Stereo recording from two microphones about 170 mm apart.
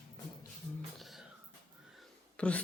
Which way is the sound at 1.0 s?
Centre (ahead or behind).